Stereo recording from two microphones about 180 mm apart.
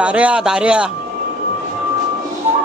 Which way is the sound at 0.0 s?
5° right (ahead or behind).